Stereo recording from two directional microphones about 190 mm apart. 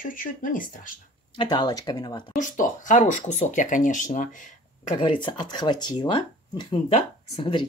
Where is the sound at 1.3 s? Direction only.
25° left (ahead or behind).